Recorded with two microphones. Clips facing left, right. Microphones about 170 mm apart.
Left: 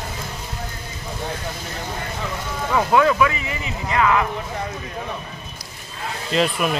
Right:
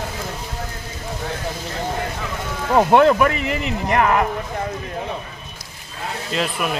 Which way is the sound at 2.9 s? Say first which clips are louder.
Right 2 dB; 50° right (ahead or behind).